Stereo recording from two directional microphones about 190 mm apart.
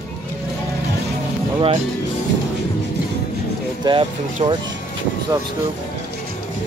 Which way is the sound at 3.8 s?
25° right (ahead or behind).